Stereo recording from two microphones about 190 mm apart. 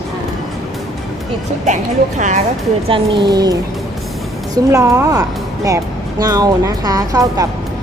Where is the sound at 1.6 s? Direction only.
40° right (ahead or behind).